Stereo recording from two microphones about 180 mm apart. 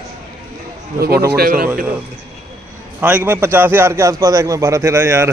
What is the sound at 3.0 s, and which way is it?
A man's voice, 10° right (ahead or behind).